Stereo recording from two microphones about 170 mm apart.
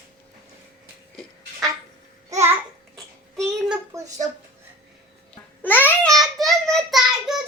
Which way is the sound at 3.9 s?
20° right (ahead or behind).